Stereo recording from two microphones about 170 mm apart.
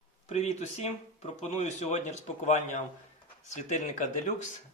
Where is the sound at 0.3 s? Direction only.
40° left (ahead or behind).